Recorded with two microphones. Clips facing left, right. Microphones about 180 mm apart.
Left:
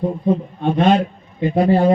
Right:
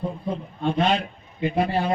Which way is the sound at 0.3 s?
60° left (ahead or behind).